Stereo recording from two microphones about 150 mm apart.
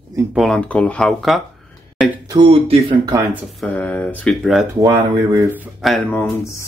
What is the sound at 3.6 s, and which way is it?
Speech, 10° left (ahead or behind).